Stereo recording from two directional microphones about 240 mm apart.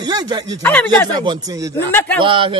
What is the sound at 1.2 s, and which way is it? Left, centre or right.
Speech, centre.